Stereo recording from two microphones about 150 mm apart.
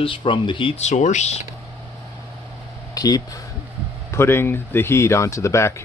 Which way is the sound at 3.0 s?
25° left (ahead or behind).